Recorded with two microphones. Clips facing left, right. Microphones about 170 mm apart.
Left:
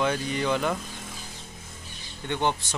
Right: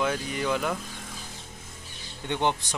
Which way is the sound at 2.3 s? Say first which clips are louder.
Even; 15° right (ahead or behind).